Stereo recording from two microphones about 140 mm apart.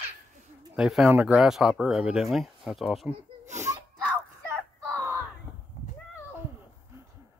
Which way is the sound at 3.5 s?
20° right (ahead or behind).